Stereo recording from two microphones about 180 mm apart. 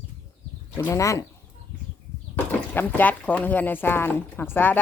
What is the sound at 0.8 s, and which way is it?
Speech, 15° left (ahead or behind).